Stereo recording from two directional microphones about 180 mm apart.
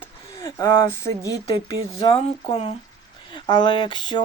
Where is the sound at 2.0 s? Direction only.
30° left (ahead or behind).